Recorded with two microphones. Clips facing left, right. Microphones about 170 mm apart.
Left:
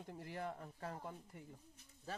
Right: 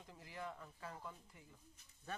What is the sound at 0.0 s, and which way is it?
Speech, 55° left (ahead or behind).